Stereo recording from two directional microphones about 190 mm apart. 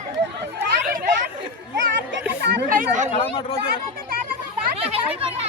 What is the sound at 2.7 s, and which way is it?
Chatter, 45° right (ahead or behind).